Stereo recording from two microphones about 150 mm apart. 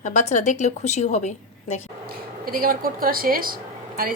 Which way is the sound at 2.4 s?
75° right (ahead or behind).